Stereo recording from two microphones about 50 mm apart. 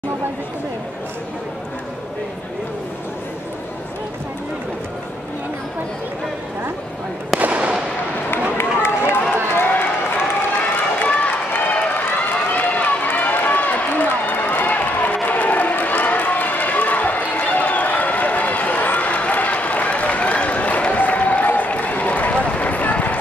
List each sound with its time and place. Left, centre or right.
7.3 s fireworks: right
8.3 s run: left
11.1 s run: left